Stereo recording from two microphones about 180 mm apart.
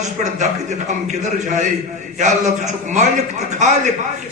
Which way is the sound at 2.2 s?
40° right (ahead or behind).